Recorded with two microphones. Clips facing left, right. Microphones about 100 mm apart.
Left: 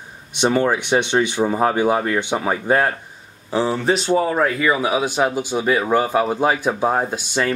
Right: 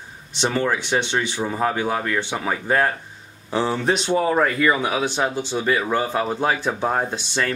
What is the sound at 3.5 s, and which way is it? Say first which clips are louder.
Speech: left 2 dB; centre (ahead or behind).